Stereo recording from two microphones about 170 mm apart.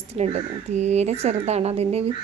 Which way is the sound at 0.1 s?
40° right (ahead or behind).